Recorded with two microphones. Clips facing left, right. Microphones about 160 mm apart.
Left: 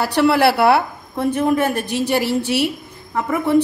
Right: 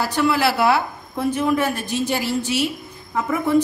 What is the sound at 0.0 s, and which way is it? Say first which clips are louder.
A woman's voice: left 4 dB; 65° left (ahead or behind).